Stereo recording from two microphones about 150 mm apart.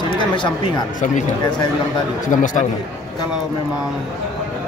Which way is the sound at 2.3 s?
60° left (ahead or behind).